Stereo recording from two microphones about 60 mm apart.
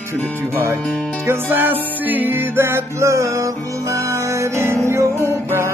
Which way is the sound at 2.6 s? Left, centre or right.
Right.